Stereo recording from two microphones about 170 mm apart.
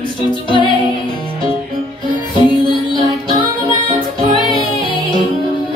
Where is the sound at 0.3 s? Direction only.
30° left (ahead or behind).